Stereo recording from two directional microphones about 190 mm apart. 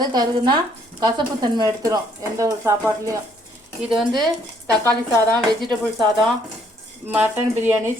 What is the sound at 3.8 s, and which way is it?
Speech, centre (ahead or behind).